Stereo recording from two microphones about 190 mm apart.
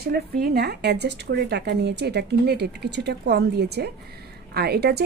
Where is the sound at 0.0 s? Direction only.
55° right (ahead or behind).